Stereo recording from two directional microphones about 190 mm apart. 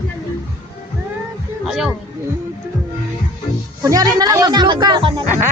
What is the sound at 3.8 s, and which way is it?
Speech, 20° right (ahead or behind).